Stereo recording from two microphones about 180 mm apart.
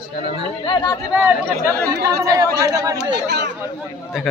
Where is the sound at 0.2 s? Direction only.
30° left (ahead or behind).